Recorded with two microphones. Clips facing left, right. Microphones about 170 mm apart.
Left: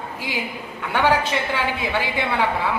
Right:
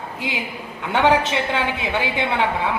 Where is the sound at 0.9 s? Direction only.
20° right (ahead or behind).